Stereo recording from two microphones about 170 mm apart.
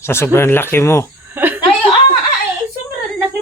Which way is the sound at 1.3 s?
10° right (ahead or behind).